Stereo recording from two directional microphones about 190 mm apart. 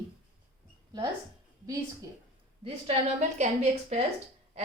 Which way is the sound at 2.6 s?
35° right (ahead or behind).